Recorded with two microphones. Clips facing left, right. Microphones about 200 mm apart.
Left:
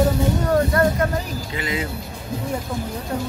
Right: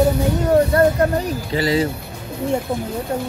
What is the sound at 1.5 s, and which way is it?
Speech, 35° right (ahead or behind).